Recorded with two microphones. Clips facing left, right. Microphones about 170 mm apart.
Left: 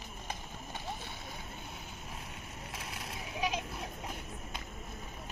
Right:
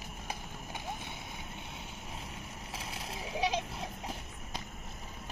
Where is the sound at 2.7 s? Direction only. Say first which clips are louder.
Right 2 dB; 30° right (ahead or behind).